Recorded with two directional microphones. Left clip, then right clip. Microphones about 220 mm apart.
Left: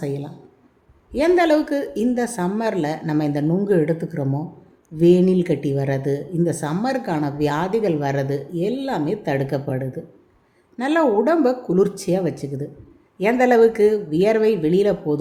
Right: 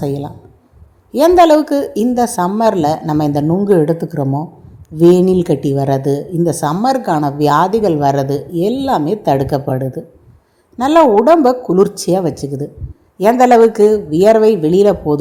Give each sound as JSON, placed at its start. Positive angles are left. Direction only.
{"t": 0.0, "sound": "speech", "side_deg": -20}